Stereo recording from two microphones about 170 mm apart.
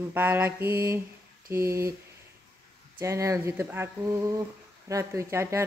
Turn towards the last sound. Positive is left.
turn(degrees=-15)  # may be behind; listen again after turning